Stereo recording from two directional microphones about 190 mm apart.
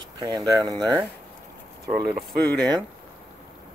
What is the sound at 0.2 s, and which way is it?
Speech, 20° right (ahead or behind).